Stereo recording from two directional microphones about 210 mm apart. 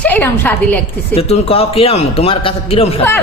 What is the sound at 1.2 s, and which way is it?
A man's voice, 30° left (ahead or behind).